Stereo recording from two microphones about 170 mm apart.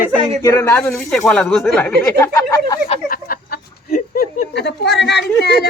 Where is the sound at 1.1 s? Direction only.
5° left (ahead or behind).